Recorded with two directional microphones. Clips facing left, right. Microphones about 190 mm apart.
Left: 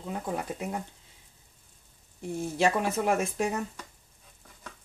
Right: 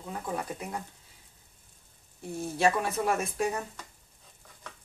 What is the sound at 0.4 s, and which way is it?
Speech, 25° left (ahead or behind).